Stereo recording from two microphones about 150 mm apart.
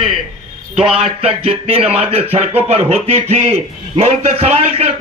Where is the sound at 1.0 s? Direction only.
40° right (ahead or behind).